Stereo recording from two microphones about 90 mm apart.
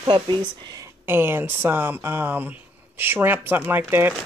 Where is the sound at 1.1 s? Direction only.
25° right (ahead or behind).